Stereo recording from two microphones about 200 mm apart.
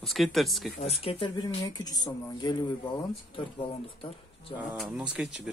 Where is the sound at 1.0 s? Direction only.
25° left (ahead or behind).